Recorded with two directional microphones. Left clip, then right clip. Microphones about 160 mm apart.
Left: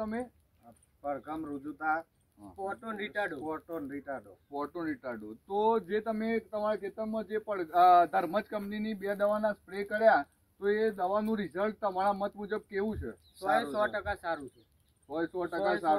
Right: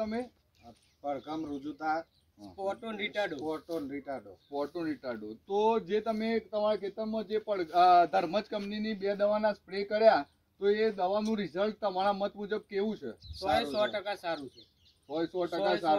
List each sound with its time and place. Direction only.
0.0 s speech: 25° right (ahead or behind)
1.0 s speech: centre (ahead or behind)
2.5 s speech: 15° right (ahead or behind)
3.4 s speech: centre (ahead or behind)
4.6 s speech: 20° right (ahead or behind)